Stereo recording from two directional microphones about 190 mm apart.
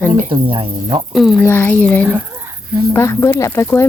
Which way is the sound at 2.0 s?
10° right (ahead or behind).